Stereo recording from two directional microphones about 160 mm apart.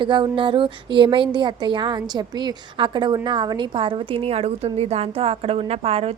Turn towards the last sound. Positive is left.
turn(degrees=-40)  # may be behind; listen again after turning